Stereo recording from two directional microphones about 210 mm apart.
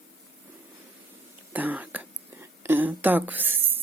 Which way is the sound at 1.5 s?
10° right (ahead or behind).